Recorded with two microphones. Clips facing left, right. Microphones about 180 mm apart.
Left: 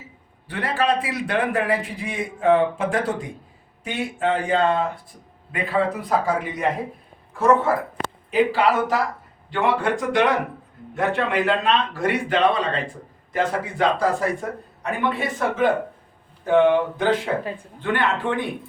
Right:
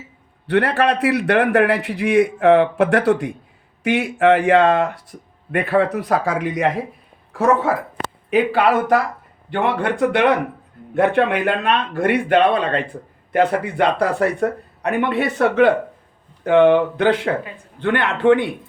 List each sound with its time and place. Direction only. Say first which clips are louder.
0.4 s a man's voice: right 6 dB; 70° right (ahead or behind)
8.3 s a man's voice: right 3 dB; 60° right (ahead or behind)